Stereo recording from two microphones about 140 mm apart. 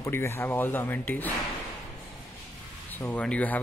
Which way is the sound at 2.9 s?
10° left (ahead or behind).